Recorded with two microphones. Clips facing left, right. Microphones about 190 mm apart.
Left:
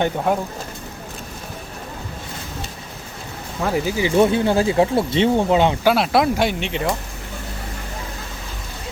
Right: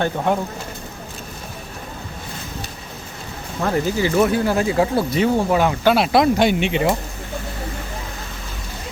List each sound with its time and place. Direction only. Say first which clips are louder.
0.3 s speech: right 1 dB; 5° left (ahead or behind)
3.6 s speech: right 1 dB; 5° left (ahead or behind)
4.2 s speech: left 3 dB; 25° left (ahead or behind)
5.8 s speech: right 1 dB; centre (ahead or behind)